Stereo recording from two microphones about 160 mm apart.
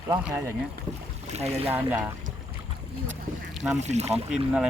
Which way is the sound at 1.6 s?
10° right (ahead or behind).